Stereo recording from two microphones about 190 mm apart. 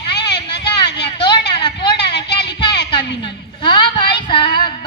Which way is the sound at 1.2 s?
25° left (ahead or behind).